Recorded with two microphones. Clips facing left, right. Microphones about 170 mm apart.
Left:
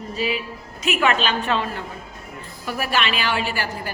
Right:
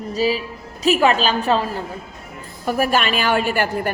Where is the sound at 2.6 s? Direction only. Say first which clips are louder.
Right 5 dB; 45° right (ahead or behind).